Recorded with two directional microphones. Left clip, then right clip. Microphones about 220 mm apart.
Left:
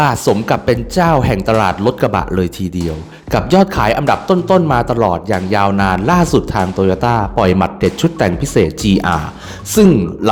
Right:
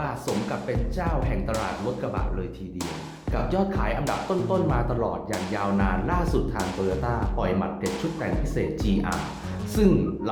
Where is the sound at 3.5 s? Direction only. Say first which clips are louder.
Left 15 dB; 45° left (ahead or behind).